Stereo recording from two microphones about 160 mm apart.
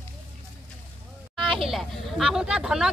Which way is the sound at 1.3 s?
Centre (ahead or behind).